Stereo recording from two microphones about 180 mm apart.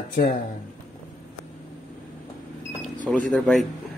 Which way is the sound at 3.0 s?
Centre (ahead or behind).